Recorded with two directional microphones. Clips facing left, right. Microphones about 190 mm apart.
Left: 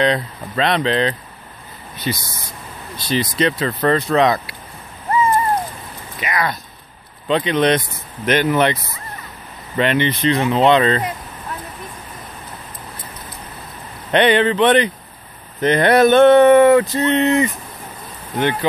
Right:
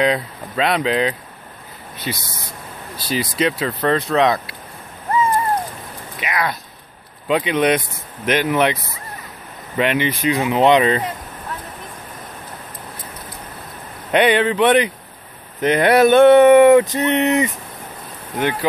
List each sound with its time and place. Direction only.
0.0 s speech: 5° right (ahead or behind)
3.0 s speech: 5° right (ahead or behind)
6.1 s speech: centre (ahead or behind)
9.8 s speech: 5° right (ahead or behind)
14.1 s speech: 5° right (ahead or behind)
18.4 s speech: 5° right (ahead or behind)